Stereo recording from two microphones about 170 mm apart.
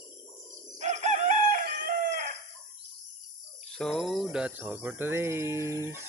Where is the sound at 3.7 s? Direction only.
5° left (ahead or behind).